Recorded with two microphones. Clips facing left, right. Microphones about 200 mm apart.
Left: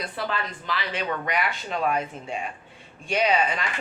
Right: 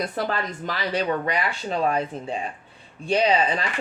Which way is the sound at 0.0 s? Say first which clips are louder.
Right 4 dB; 40° right (ahead or behind).